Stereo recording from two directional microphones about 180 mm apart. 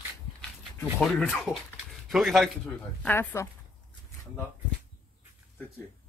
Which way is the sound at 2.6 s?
10° left (ahead or behind).